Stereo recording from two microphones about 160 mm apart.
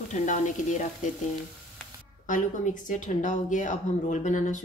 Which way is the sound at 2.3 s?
55° left (ahead or behind).